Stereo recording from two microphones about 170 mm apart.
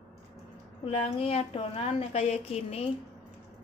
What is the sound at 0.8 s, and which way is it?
A woman's voice, 35° left (ahead or behind).